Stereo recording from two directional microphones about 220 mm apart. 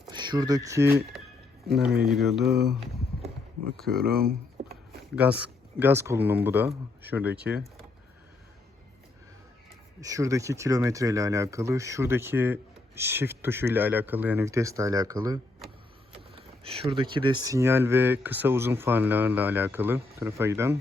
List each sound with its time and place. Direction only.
0.1 s speech: 20° right (ahead or behind)
2.0 s mantra: centre (ahead or behind)
3.8 s speech: 45° right (ahead or behind)
5.1 s speech: 5° right (ahead or behind)
10.0 s speech: 15° right (ahead or behind)